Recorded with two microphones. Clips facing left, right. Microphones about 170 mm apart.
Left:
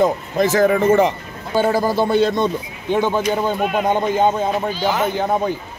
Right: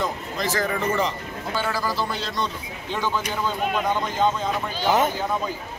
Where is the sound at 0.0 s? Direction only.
50° left (ahead or behind).